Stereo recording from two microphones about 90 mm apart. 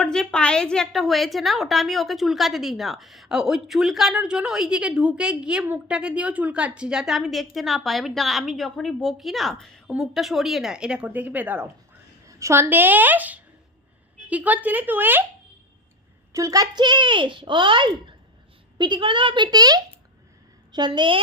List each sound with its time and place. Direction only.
0.0 s a woman's voice: 10° left (ahead or behind); by 12.6 s 30° right (ahead or behind)
12.6 s speech: 20° right (ahead or behind)
16.3 s a woman's voice: 40° right (ahead or behind)
16.7 s a child's voice: 55° right (ahead or behind)